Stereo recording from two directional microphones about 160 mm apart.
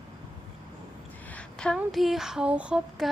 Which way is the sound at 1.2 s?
5° left (ahead or behind).